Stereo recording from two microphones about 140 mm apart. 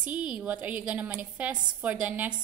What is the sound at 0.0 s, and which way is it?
A woman's voice, 10° right (ahead or behind).